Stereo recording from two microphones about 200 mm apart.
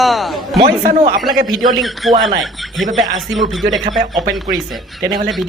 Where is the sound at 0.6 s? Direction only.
40° right (ahead or behind).